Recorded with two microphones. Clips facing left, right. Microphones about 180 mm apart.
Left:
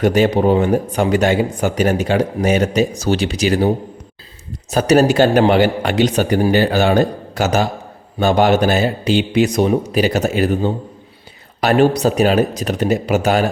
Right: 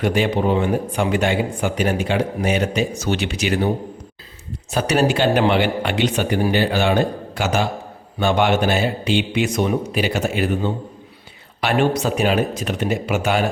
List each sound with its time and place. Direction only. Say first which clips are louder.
0.0 s speech: left 5 dB; 40° left (ahead or behind)
4.7 s speech: left 6 dB; 40° left (ahead or behind)